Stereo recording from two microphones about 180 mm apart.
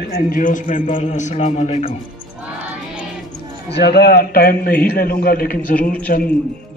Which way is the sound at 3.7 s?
65° left (ahead or behind).